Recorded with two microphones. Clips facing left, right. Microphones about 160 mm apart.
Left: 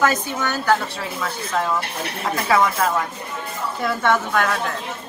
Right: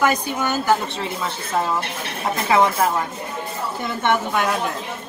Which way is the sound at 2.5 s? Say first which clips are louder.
Right 1 dB; 25° right (ahead or behind).